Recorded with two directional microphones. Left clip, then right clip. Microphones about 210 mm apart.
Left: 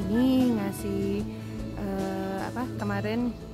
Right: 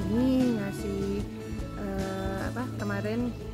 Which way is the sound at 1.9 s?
15° left (ahead or behind).